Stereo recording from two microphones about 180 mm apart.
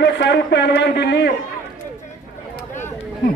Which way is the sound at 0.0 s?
75° left (ahead or behind).